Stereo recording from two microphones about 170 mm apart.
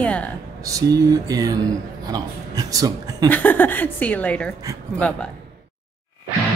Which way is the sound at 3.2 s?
10° left (ahead or behind).